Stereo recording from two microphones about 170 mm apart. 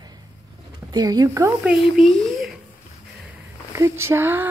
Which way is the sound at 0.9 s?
20° right (ahead or behind).